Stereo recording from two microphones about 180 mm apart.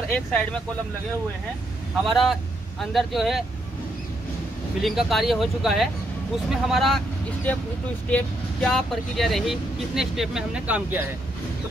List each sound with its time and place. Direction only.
0.1 s speech: 5° left (ahead or behind)
2.0 s speech: centre (ahead or behind)
4.8 s speech: centre (ahead or behind)
8.1 s speech: 5° left (ahead or behind)